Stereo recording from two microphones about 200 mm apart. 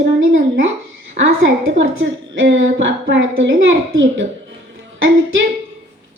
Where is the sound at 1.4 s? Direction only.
60° right (ahead or behind).